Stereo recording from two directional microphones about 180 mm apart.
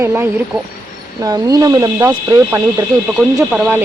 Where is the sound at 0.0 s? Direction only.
15° right (ahead or behind).